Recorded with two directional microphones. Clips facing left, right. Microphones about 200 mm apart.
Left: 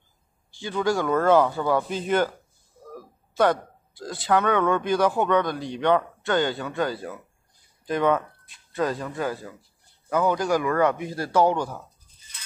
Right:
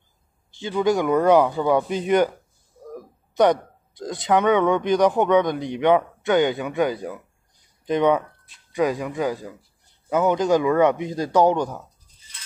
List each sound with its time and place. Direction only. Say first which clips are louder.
0.5 s a man's voice: right 4 dB; 20° right (ahead or behind)